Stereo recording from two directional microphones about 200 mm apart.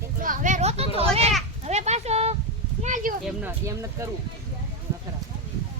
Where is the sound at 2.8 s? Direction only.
40° right (ahead or behind).